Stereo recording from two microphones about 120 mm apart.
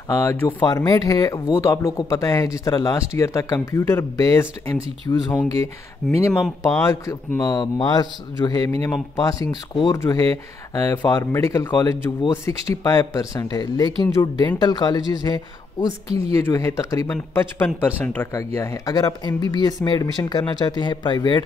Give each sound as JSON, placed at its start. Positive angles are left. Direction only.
{"t": 0.1, "sound": "speech", "side_deg": 25}
{"t": 6.0, "sound": "speech", "side_deg": 0}
{"t": 6.7, "sound": "speech", "side_deg": 20}
{"t": 7.4, "sound": "speech", "side_deg": 35}
{"t": 16.3, "sound": "speech", "side_deg": 25}